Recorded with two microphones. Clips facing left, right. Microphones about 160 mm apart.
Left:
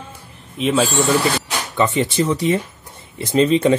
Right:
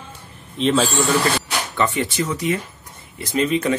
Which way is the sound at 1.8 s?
25° left (ahead or behind).